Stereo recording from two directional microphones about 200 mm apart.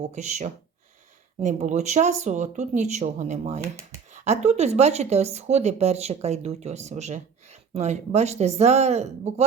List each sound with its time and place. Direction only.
0.1 s a woman's voice: 35° right (ahead or behind)